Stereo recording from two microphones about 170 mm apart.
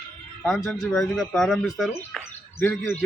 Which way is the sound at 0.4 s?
5° left (ahead or behind).